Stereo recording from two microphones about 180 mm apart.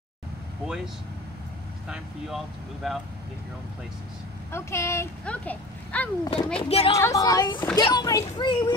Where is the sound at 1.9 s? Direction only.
Centre (ahead or behind).